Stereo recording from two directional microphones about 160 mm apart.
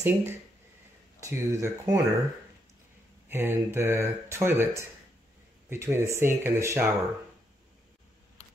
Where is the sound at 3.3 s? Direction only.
15° right (ahead or behind).